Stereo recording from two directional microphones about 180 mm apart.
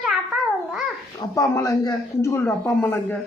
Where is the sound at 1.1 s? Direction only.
20° left (ahead or behind).